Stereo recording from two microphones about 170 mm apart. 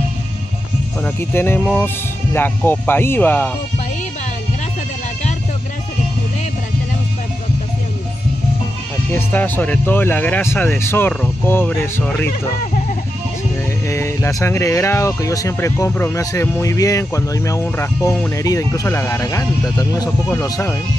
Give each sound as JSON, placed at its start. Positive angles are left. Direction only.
{"t": 1.0, "sound": "speech", "side_deg": 10}
{"t": 9.1, "sound": "speech", "side_deg": 10}
{"t": 13.8, "sound": "speech", "side_deg": 15}